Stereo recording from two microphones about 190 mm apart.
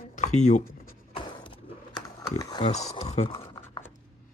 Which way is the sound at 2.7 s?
35° left (ahead or behind).